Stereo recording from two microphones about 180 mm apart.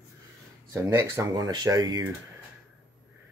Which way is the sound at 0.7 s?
15° right (ahead or behind).